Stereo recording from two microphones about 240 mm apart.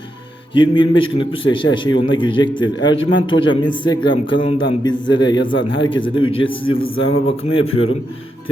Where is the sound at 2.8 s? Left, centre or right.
Left.